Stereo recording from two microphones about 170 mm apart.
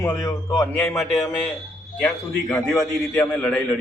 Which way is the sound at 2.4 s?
5° left (ahead or behind).